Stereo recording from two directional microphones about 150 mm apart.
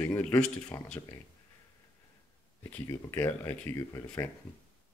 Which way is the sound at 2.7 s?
15° left (ahead or behind).